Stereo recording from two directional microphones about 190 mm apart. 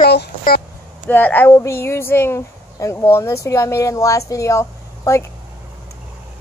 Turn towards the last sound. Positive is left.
turn(degrees=15)  # may be behind; listen again after turning